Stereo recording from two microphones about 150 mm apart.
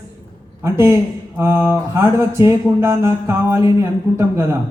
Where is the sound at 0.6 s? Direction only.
20° right (ahead or behind).